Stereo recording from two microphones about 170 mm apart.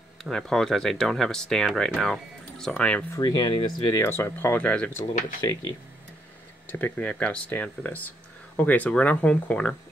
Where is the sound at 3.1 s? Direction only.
25° left (ahead or behind).